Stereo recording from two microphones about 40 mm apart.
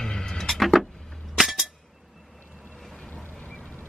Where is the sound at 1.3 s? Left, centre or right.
Centre.